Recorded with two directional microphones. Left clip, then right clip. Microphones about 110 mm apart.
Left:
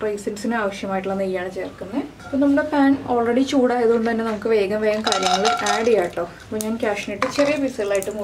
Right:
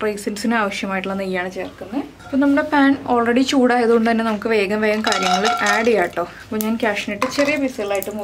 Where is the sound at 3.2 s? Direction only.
40° right (ahead or behind).